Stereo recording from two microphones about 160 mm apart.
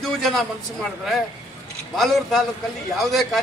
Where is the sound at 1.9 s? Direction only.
Centre (ahead or behind).